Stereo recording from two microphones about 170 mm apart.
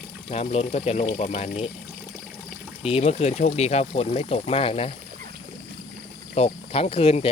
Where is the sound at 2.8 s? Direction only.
35° left (ahead or behind).